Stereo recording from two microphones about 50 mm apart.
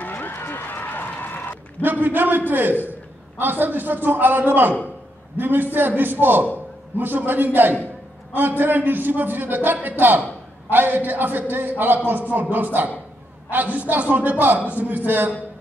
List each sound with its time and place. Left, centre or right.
0.0 s run: left
1.8 s a man's voice: right